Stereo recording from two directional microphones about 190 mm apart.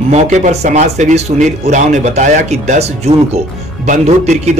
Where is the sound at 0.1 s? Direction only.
35° right (ahead or behind).